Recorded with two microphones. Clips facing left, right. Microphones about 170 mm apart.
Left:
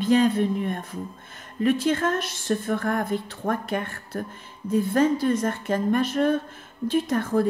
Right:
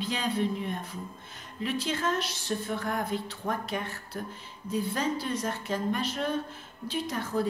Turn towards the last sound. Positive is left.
turn(degrees=50)  # may be behind; listen again after turning